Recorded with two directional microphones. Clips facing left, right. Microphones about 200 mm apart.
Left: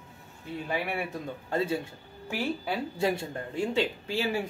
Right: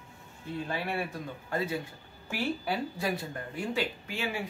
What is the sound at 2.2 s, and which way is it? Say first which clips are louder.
Speech: left 1 dB; 15° left (ahead or behind).